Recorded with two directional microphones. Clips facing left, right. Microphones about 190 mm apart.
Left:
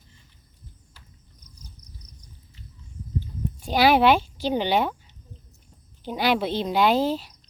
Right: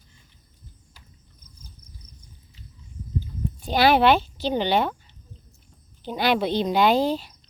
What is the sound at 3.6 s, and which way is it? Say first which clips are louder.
Speech: even; 10° left (ahead or behind).